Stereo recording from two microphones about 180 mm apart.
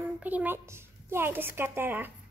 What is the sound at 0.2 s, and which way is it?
A woman's voice, 10° right (ahead or behind).